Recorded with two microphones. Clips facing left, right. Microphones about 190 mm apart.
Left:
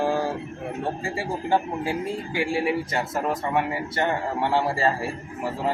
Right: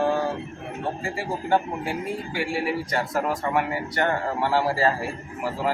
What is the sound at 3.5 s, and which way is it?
Speech, 25° left (ahead or behind).